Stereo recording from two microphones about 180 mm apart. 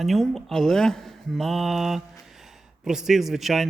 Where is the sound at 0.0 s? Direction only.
Centre (ahead or behind).